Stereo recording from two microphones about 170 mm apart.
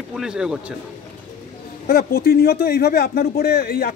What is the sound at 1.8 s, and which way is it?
Speech, 65° left (ahead or behind).